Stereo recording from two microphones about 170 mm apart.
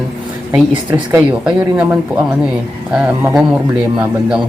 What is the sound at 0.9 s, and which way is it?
Speech, 10° right (ahead or behind).